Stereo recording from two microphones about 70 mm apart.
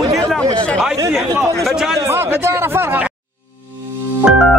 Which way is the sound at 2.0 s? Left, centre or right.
Right.